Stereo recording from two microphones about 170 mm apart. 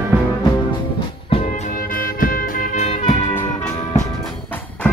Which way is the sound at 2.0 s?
55° left (ahead or behind).